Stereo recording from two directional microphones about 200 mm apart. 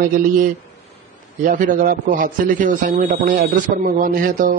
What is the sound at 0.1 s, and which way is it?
A man's voice, 45° right (ahead or behind).